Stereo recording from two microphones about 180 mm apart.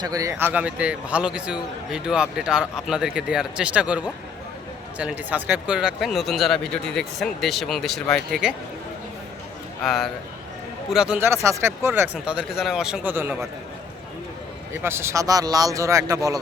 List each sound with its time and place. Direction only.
0.0 s speech: 20° right (ahead or behind)
9.8 s speech: centre (ahead or behind)
14.7 s speech: 15° right (ahead or behind)